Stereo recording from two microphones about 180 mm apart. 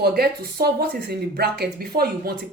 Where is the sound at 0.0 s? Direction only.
60° right (ahead or behind).